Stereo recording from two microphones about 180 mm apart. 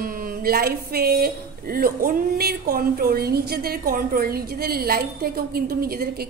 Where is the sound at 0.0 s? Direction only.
55° right (ahead or behind).